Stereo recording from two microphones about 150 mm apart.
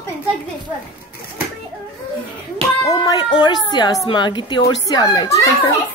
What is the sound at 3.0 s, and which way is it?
Speech, 30° left (ahead or behind).